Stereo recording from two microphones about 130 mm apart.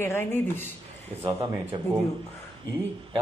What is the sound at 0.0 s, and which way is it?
Speech, 15° left (ahead or behind).